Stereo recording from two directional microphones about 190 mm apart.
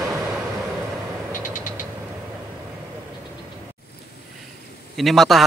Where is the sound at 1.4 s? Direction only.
45° left (ahead or behind).